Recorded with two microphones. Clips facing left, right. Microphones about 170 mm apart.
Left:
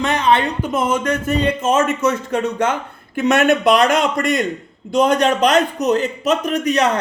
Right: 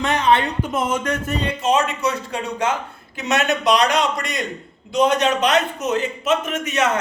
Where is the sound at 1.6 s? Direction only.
45° left (ahead or behind).